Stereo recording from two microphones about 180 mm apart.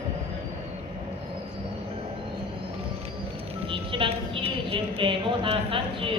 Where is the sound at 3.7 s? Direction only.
30° right (ahead or behind).